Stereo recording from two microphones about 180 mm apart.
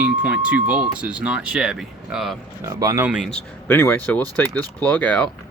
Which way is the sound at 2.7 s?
15° right (ahead or behind).